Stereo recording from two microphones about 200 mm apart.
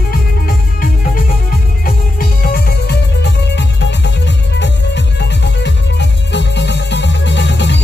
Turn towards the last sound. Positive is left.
turn(degrees=60)  # may be behind; listen again after turning